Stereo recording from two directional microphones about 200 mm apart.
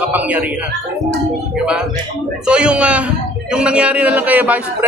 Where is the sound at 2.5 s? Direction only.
5° right (ahead or behind).